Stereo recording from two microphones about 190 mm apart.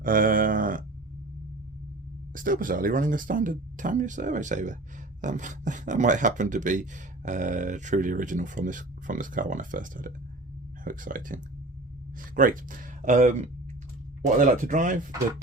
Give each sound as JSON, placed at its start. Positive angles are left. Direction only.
{"t": 0.0, "sound": "speech", "side_deg": -45}
{"t": 2.3, "sound": "speech", "side_deg": -45}
{"t": 12.4, "sound": "speech", "side_deg": -45}